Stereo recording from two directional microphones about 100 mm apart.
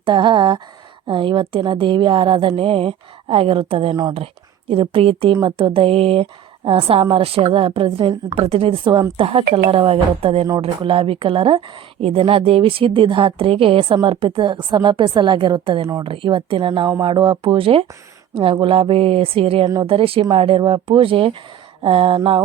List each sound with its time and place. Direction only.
0.0 s a woman's voice: 55° right (ahead or behind)
5.4 s a woman's voice: 55° right (ahead or behind)
9.1 s a woman's voice: 65° right (ahead or behind); by 16.0 s 50° right (ahead or behind)
16.0 s a woman's voice: 60° right (ahead or behind)
19.6 s speech: 45° right (ahead or behind)
19.9 s a woman's voice: 65° right (ahead or behind)